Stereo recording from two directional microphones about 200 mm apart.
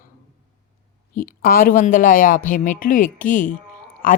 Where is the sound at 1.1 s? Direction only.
45° left (ahead or behind).